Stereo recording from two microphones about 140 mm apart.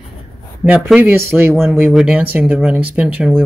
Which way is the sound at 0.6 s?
5° right (ahead or behind).